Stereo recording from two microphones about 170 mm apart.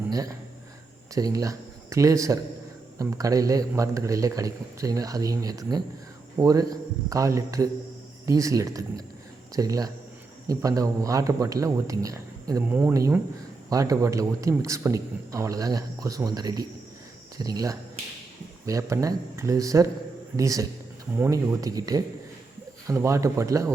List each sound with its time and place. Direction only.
0.1 s a man's voice: 20° right (ahead or behind)